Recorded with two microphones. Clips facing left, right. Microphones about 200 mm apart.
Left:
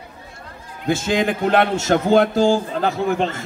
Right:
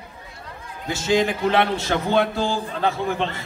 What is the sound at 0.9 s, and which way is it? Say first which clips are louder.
A man's voice: left 1 dB; 55° left (ahead or behind).